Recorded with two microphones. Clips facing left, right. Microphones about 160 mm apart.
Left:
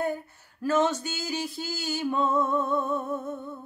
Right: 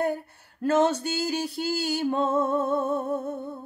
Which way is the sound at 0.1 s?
60° right (ahead or behind).